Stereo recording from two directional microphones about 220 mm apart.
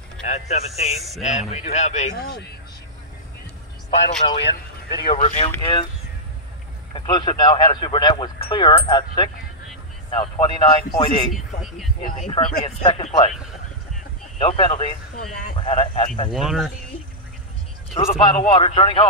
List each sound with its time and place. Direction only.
0.2 s speech: 30° left (ahead or behind)
0.9 s a man's voice: centre (ahead or behind)
1.2 s speech: 30° left (ahead or behind)
2.1 s speech: 45° left (ahead or behind)
4.2 s speech: 25° left (ahead or behind)
6.9 s speech: 20° left (ahead or behind)
11.3 s a man's voice: centre (ahead or behind)
12.0 s speech: 25° left (ahead or behind)
14.6 s speech: 20° left (ahead or behind)
16.3 s a man's voice: centre (ahead or behind)
18.1 s speech: 20° left (ahead or behind)